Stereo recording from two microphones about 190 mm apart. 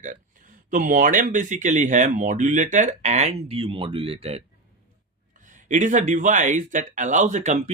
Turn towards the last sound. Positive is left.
turn(degrees=-40)  # may be behind; listen again after turning